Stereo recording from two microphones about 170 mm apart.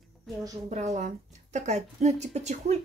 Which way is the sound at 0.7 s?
40° right (ahead or behind).